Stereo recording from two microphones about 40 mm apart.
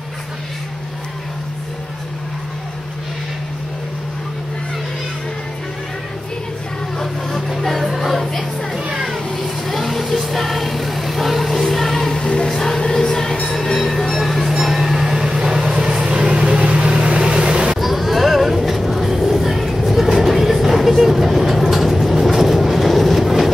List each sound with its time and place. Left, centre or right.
7.0 s music: centre
9.3 s vehicle: centre
12.2 s a sound: left
12.4 s music: centre
13.7 s music: centre
14.6 s train: centre
15.7 s vehicle: centre
17.7 s vehicle: centre